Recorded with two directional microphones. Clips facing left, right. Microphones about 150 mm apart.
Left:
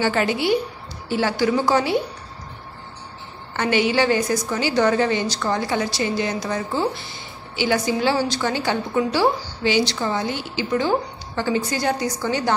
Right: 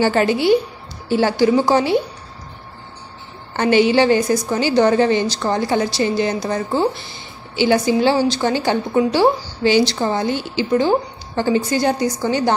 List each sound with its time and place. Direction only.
0.0 s a woman's voice: 35° right (ahead or behind)
3.5 s a woman's voice: 30° right (ahead or behind)